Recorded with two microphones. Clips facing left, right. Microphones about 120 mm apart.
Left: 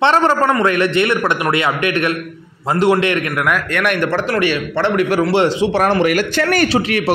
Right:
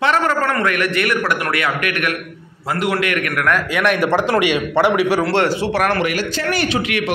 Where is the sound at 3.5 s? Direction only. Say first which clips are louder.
Right 2 dB; centre (ahead or behind).